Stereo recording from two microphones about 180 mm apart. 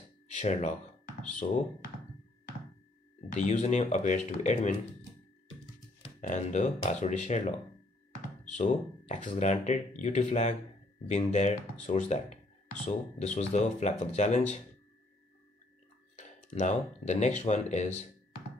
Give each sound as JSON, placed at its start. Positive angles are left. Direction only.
{"t": 0.3, "sound": "speech", "side_deg": 40}
{"t": 3.3, "sound": "speech", "side_deg": 40}
{"t": 6.2, "sound": "speech", "side_deg": 40}
{"t": 8.5, "sound": "speech", "side_deg": 40}
{"t": 16.2, "sound": "speech", "side_deg": 40}